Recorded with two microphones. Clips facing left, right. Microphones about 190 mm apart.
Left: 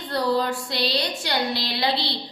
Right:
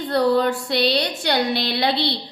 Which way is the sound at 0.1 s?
60° right (ahead or behind).